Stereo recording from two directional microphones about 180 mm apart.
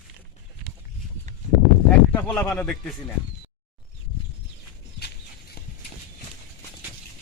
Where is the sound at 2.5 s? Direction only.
5° left (ahead or behind).